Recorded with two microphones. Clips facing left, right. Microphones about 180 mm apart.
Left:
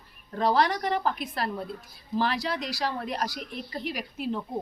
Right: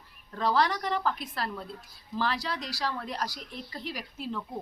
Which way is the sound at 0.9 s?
20° left (ahead or behind).